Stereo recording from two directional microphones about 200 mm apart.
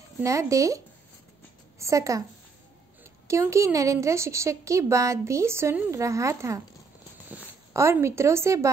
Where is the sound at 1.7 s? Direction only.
15° right (ahead or behind).